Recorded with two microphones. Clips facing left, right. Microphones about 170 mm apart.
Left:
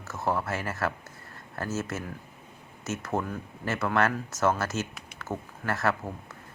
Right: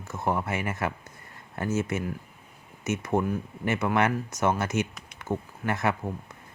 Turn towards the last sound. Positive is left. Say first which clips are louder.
# right 1 dB
turn(degrees=-15)  # may be behind; listen again after turning